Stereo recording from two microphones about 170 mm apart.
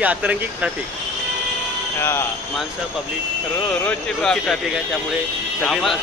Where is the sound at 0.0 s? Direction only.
10° right (ahead or behind).